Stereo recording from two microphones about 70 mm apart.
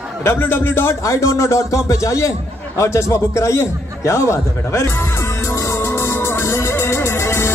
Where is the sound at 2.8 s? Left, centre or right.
Left.